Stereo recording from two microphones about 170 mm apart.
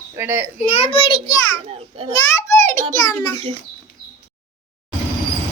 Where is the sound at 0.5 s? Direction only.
40° left (ahead or behind).